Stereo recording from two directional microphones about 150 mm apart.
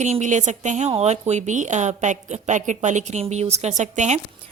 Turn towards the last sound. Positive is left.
turn(degrees=-50)  # may be behind; listen again after turning